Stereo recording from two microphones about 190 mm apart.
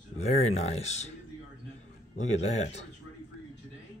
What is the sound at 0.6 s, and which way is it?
Speech, 35° left (ahead or behind).